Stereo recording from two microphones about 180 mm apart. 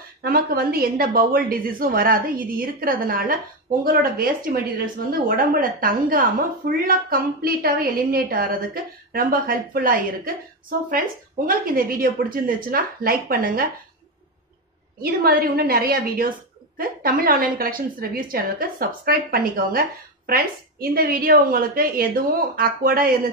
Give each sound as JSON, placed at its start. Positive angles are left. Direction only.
{"t": 0.2, "sound": "speech", "side_deg": -55}
{"t": 11.4, "sound": "speech", "side_deg": -55}
{"t": 15.0, "sound": "speech", "side_deg": -55}